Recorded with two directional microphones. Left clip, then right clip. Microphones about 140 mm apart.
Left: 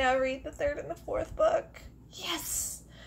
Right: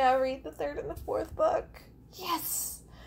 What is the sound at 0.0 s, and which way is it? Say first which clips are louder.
Speech: right 2 dB; 40° right (ahead or behind).